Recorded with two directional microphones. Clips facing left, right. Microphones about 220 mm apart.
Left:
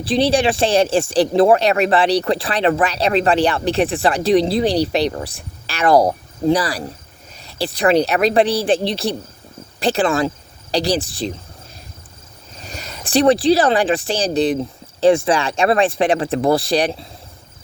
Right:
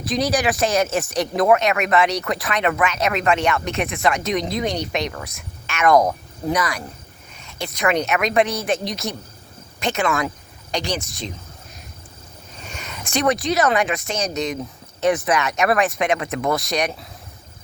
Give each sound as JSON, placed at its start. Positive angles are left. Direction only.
{"t": 0.0, "sound": "speech", "side_deg": 30}
{"t": 12.5, "sound": "speech", "side_deg": 35}